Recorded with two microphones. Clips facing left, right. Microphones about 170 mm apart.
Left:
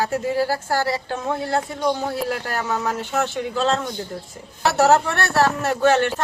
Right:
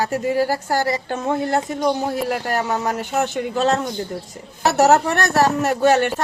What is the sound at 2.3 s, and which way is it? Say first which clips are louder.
Speech: right 4 dB; 35° right (ahead or behind).